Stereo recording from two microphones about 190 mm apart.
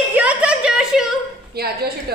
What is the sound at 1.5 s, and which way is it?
Speech, 55° right (ahead or behind).